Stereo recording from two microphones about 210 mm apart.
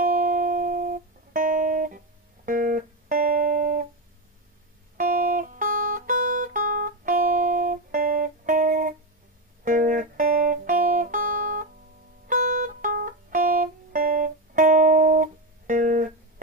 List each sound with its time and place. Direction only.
0.0 s music: 40° right (ahead or behind)
4.9 s music: 40° right (ahead or behind)